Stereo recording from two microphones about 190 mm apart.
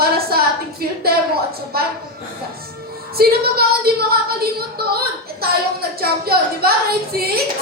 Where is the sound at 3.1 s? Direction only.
55° right (ahead or behind).